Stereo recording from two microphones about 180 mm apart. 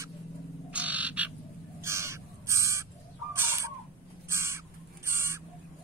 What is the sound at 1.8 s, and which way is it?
Crow, 15° right (ahead or behind).